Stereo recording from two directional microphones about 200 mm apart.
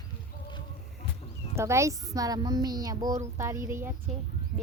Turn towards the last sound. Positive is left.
turn(degrees=-15)  # may be behind; listen again after turning